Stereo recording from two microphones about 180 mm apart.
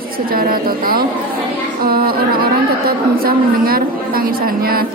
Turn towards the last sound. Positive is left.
turn(degrees=-55)  # may be behind; listen again after turning